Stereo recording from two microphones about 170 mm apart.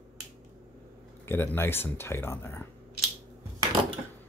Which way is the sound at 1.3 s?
15° left (ahead or behind).